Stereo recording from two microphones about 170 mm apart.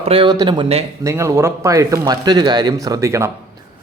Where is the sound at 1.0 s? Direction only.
15° right (ahead or behind).